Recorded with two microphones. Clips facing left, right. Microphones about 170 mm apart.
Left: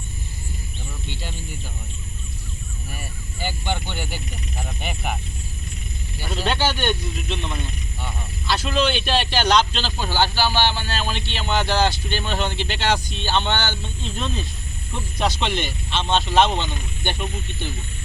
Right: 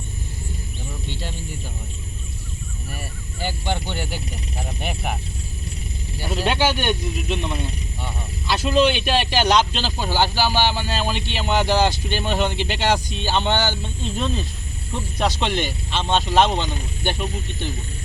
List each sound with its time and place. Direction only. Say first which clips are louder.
2.9 s speech: right 2 dB; centre (ahead or behind)
6.2 s speech: right 2 dB; 5° right (ahead or behind)
16.5 s speech: right 2 dB; 35° right (ahead or behind)
17.0 s speech: right 2 dB; 10° right (ahead or behind)
17.2 s speech: right 2 dB; 35° right (ahead or behind)